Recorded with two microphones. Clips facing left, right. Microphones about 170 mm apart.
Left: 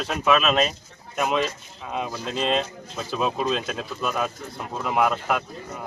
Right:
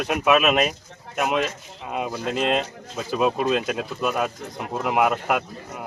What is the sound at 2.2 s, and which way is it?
Speech, 60° right (ahead or behind).